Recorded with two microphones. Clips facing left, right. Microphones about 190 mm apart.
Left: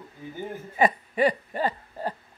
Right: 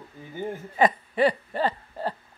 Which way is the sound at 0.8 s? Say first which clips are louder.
Right 1 dB; 10° left (ahead or behind).